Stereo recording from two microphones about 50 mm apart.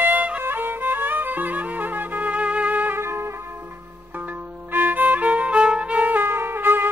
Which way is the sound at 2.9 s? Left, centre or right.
Right.